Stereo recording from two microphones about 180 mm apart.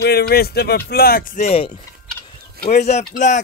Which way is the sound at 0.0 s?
60° left (ahead or behind).